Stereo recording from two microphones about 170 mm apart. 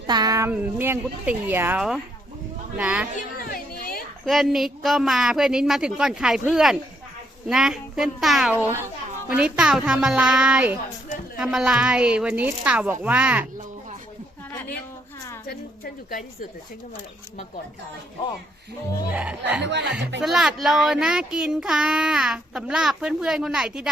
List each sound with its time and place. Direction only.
0.1 s a woman's voice: 25° right (ahead or behind); by 3.1 s 5° right (ahead or behind)
3.5 s a sound: 60° left (ahead or behind)
4.3 s a woman's voice: centre (ahead or behind)
15.4 s a sound: 60° left (ahead or behind)
19.1 s a woman's voice: 10° right (ahead or behind)
19.6 s speech: 90° right
20.2 s speech: 5° right (ahead or behind)